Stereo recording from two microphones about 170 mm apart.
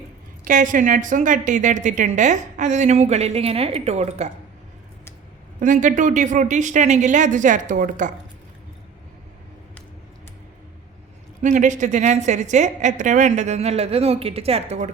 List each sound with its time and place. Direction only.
0.4 s a woman's voice: 50° right (ahead or behind)
5.5 s a woman's voice: 50° right (ahead or behind)
11.4 s a woman's voice: 45° right (ahead or behind)